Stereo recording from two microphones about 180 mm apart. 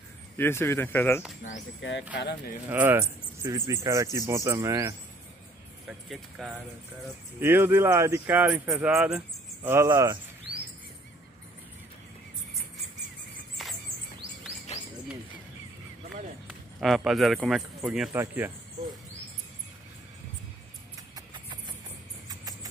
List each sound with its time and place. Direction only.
0.4 s speech: 15° left (ahead or behind)
1.8 s speech: 90° left
2.1 s speech: 70° left (ahead or behind)
2.7 s speech: 10° right (ahead or behind)
5.9 s speech: centre (ahead or behind)
7.3 s speech: 10° right (ahead or behind)
13.6 s a sound: centre (ahead or behind)
16.4 s speech: centre (ahead or behind)
21.1 s rodents: 25° right (ahead or behind)
22.4 s a sound: 20° right (ahead or behind)